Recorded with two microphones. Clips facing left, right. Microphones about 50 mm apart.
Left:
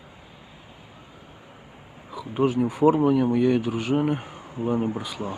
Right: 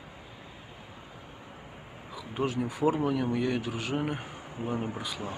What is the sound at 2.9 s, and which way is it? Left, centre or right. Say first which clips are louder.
Speech: left 8 dB; centre.